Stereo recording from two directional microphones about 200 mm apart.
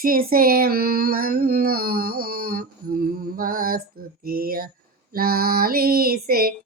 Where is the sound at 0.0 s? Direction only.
45° right (ahead or behind).